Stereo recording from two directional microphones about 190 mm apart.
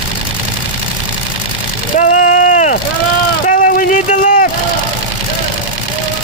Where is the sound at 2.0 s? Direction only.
45° left (ahead or behind).